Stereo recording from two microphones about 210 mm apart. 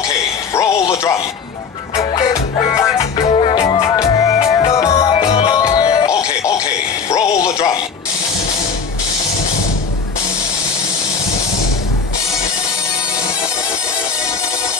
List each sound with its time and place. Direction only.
0.6 s speech: 15° left (ahead or behind)
2.0 s music: 20° left (ahead or behind)
3.0 s music: 25° left (ahead or behind)
7.1 s a sound: 15° left (ahead or behind)